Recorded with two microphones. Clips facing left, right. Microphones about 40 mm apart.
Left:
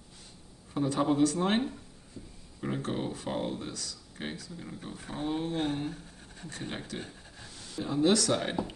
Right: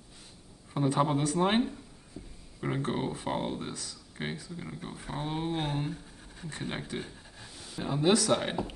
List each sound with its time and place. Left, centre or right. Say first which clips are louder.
0.7 s speech: left 1 dB; centre
2.1 s a sound: right 1 dB; centre
2.6 s speech: right 2 dB; centre
4.7 s speech: even; centre